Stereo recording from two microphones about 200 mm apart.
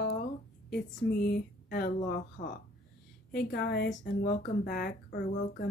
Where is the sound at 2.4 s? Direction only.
40° left (ahead or behind).